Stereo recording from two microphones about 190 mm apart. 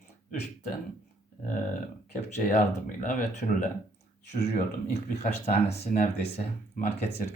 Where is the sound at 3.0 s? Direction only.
45° left (ahead or behind).